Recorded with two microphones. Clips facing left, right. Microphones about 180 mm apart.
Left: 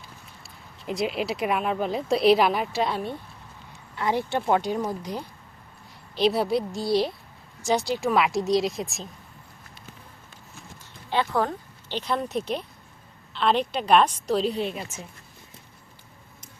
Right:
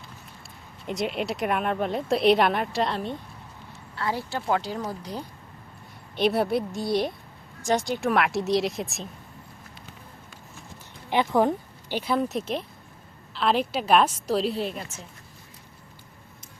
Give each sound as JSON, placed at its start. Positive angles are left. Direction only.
{"t": 0.9, "sound": "speech", "side_deg": 0}
{"t": 3.7, "sound": "speech", "side_deg": 20}
{"t": 6.6, "sound": "speech", "side_deg": 0}
{"t": 11.1, "sound": "speech", "side_deg": -15}